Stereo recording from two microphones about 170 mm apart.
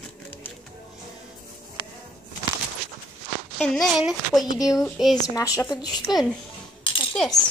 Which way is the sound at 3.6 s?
Centre (ahead or behind).